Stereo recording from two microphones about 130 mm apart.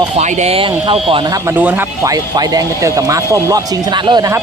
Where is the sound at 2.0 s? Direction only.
30° right (ahead or behind).